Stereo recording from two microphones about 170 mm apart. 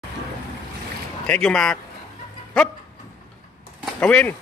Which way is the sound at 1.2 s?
5° left (ahead or behind).